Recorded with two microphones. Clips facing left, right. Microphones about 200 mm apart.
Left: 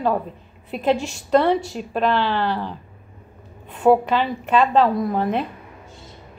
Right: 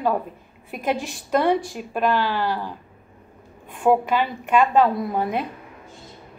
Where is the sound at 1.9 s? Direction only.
10° right (ahead or behind).